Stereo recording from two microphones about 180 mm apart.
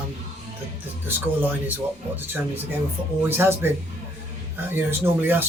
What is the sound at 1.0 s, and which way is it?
Speech, 10° right (ahead or behind).